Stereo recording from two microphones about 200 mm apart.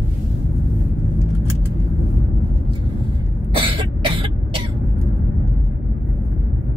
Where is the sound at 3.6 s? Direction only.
25° right (ahead or behind).